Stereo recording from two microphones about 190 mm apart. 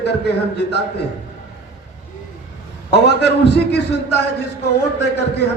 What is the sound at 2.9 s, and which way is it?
A man's voice, 60° left (ahead or behind).